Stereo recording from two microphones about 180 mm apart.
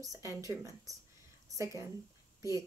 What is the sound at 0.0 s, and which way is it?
Speech, 15° right (ahead or behind).